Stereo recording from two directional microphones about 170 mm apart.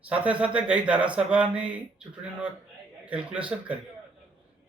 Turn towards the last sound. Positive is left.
turn(degrees=-10)  # may be behind; listen again after turning